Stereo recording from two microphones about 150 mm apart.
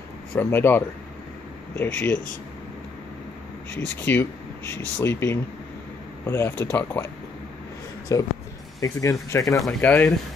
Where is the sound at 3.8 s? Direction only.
15° left (ahead or behind).